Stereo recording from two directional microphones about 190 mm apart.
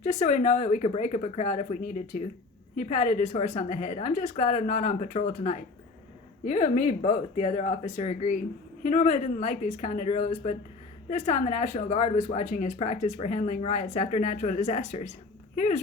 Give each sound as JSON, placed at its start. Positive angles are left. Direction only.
{"t": 0.0, "sound": "speech", "side_deg": 35}